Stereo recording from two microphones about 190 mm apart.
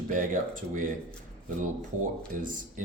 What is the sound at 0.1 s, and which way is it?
Speech, 45° right (ahead or behind).